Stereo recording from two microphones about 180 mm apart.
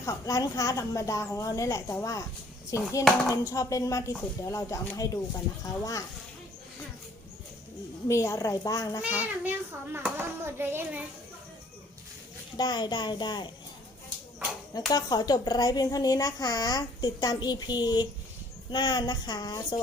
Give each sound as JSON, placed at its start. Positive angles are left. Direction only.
{"t": 0.0, "sound": "a woman's voice", "side_deg": 20}
{"t": 8.0, "sound": "speech", "side_deg": 15}
{"t": 9.0, "sound": "a child's voice", "side_deg": -10}
{"t": 12.5, "sound": "speech", "side_deg": 25}
{"t": 14.7, "sound": "speech", "side_deg": 20}